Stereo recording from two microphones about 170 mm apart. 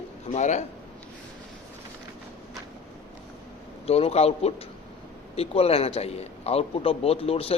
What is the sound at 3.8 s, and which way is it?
A man's voice, 35° left (ahead or behind).